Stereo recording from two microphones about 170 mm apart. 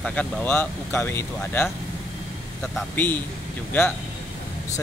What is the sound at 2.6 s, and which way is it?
Speech, centre (ahead or behind).